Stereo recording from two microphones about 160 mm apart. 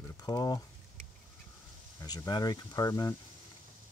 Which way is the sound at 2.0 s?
25° left (ahead or behind).